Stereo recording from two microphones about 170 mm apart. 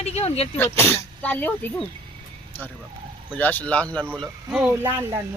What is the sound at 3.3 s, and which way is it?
Speech, 10° left (ahead or behind).